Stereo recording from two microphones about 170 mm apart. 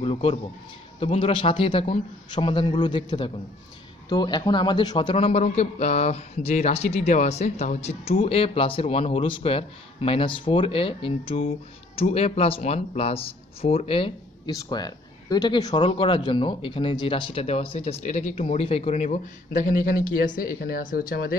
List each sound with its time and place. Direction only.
0.0 s a man's voice: 35° left (ahead or behind); by 21.4 s 60° left (ahead or behind)